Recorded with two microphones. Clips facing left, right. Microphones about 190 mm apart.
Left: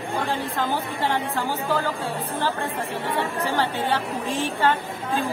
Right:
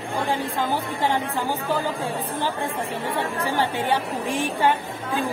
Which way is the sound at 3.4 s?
15° right (ahead or behind).